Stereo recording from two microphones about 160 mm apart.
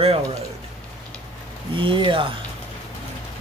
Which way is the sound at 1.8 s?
30° right (ahead or behind).